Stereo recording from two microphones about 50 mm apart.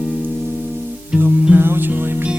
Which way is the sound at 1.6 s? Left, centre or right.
Right.